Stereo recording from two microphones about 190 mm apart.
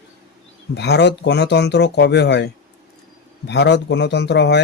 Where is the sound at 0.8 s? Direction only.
65° left (ahead or behind).